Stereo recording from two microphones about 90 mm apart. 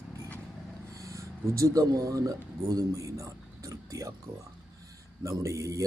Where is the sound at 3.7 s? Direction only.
40° right (ahead or behind).